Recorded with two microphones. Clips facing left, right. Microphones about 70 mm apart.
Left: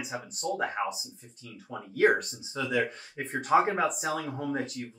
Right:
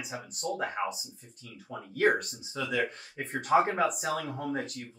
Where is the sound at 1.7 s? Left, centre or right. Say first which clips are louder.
Left 2 dB; centre.